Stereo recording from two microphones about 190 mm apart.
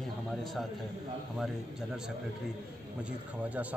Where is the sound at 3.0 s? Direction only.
5° right (ahead or behind).